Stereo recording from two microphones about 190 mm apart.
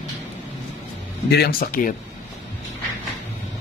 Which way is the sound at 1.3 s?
55° left (ahead or behind).